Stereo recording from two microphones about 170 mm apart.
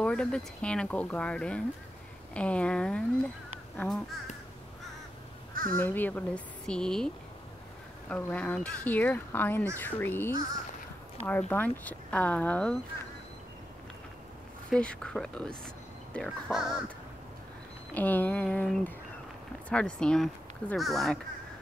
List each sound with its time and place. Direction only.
0.0 s speech: 5° left (ahead or behind)
5.5 s crow: 55° right (ahead or behind)
5.8 s speech: 10° left (ahead or behind)
8.1 s speech: 10° left (ahead or behind)
14.7 s speech: 5° left (ahead or behind)
17.9 s speech: 10° left (ahead or behind)